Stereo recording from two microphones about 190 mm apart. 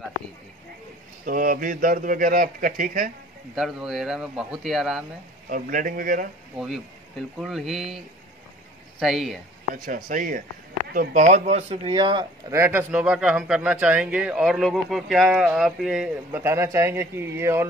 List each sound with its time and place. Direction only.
1.2 s a man's voice: 45° right (ahead or behind)
3.5 s a man's voice: centre (ahead or behind)
5.5 s a man's voice: 45° right (ahead or behind)
6.6 s a man's voice: centre (ahead or behind)
9.0 s a man's voice: centre (ahead or behind)
9.8 s a man's voice: 45° right (ahead or behind); by 17.6 s 15° right (ahead or behind)